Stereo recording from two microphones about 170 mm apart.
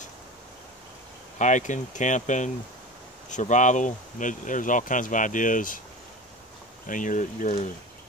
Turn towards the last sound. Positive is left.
turn(degrees=45)  # may be behind; listen again after turning